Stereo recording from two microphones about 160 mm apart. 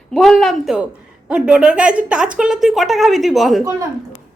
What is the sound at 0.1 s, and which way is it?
Speech, centre (ahead or behind).